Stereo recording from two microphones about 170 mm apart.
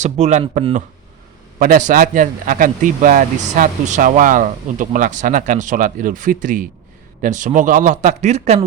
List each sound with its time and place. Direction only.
0.0 s speech: 45° right (ahead or behind)
1.5 s speech: 50° right (ahead or behind)